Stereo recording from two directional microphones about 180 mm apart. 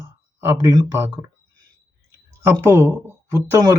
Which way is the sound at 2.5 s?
15° right (ahead or behind).